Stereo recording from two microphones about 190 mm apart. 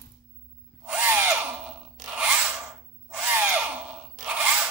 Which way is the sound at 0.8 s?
10° right (ahead or behind).